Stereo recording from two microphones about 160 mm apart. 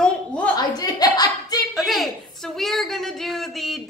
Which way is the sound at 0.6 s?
25° left (ahead or behind).